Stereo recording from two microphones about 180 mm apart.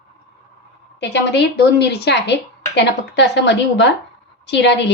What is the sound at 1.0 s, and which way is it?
A woman's voice, 75° left (ahead or behind).